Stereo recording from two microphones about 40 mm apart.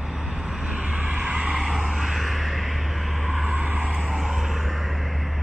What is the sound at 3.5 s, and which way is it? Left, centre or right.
Vehicle, right.